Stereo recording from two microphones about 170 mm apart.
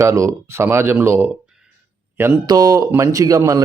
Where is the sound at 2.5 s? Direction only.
20° right (ahead or behind).